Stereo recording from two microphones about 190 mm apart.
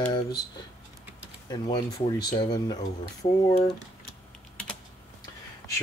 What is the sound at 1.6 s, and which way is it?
Speech, 35° left (ahead or behind).